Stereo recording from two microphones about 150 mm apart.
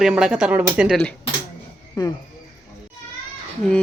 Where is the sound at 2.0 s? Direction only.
25° left (ahead or behind).